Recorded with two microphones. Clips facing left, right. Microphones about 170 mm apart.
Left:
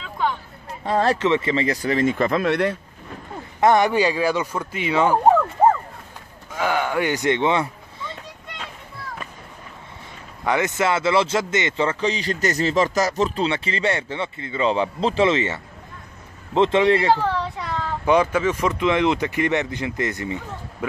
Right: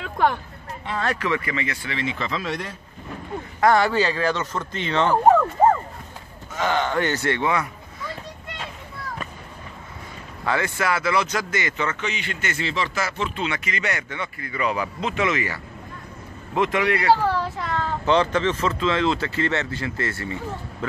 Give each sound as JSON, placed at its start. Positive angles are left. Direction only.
{"t": 0.0, "sound": "hubbub", "side_deg": -65}
{"t": 0.8, "sound": "speech", "side_deg": 40}
{"t": 1.1, "sound": "speech", "side_deg": 25}
{"t": 3.6, "sound": "speech", "side_deg": 20}
{"t": 6.5, "sound": "speech", "side_deg": 10}
{"t": 10.4, "sound": "speech", "side_deg": 20}
{"t": 17.1, "sound": "children playing", "side_deg": -5}
{"t": 18.0, "sound": "speech", "side_deg": 10}